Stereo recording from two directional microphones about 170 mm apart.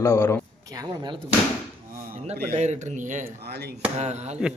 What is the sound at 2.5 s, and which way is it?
Speech, 45° right (ahead or behind).